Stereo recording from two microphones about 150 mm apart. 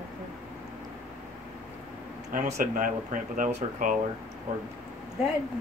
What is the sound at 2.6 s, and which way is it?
Speech, 65° right (ahead or behind).